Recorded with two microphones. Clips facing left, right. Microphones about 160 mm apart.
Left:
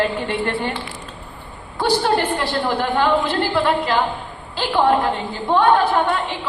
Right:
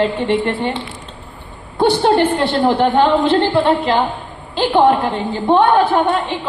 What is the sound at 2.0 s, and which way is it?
A woman's voice, 25° right (ahead or behind).